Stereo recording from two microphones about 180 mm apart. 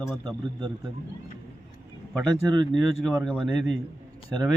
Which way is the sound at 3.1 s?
Centre (ahead or behind).